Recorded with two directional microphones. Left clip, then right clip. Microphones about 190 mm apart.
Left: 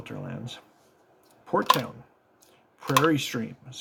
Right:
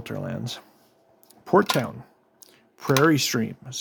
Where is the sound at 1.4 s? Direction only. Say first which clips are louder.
Right 3 dB; 60° right (ahead or behind).